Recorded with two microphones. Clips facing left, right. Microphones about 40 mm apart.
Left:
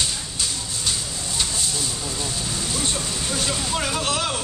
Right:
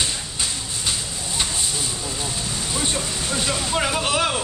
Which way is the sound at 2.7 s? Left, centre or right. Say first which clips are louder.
Right 3 dB; centre.